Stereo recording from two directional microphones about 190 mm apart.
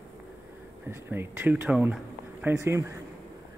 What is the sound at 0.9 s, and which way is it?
Speech, 15° right (ahead or behind).